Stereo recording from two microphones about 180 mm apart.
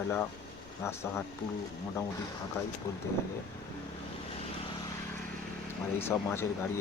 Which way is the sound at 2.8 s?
15° left (ahead or behind).